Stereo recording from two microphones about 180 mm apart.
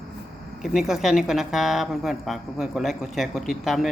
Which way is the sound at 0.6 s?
Centre (ahead or behind).